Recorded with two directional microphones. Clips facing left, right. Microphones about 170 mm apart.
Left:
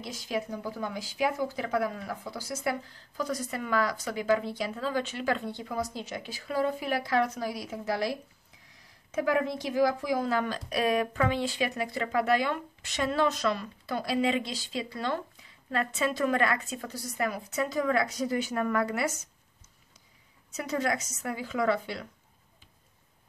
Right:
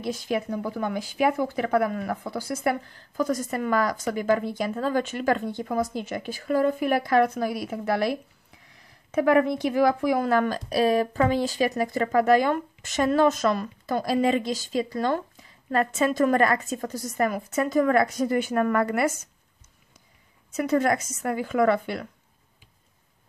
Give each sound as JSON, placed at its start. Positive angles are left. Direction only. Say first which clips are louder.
{"t": 0.0, "sound": "speech", "louder": "right 6 dB", "side_deg": -55}
{"t": 10.7, "sound": "speech", "louder": "right 5 dB", "side_deg": -30}
{"t": 20.5, "sound": "speech", "louder": "right 7 dB", "side_deg": -55}